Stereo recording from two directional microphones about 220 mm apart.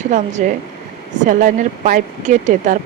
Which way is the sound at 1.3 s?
40° right (ahead or behind).